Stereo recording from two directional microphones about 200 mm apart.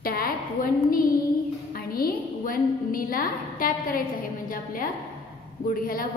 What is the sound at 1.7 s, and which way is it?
A woman's voice, 45° left (ahead or behind).